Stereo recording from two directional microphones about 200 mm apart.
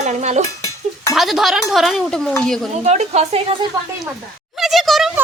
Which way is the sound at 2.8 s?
35° right (ahead or behind).